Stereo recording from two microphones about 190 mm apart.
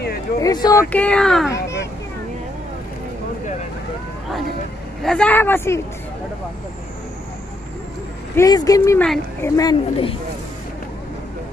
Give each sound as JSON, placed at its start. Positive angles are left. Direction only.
{"t": 0.4, "sound": "speech", "side_deg": 20}
{"t": 0.9, "sound": "speech", "side_deg": 5}
{"t": 5.0, "sound": "speech", "side_deg": 5}
{"t": 8.4, "sound": "speech", "side_deg": 20}